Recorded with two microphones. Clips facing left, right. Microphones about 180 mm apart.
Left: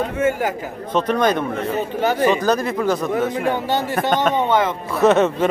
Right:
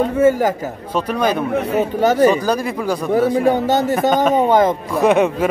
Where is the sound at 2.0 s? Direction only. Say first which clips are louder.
Right 4 dB; 40° right (ahead or behind).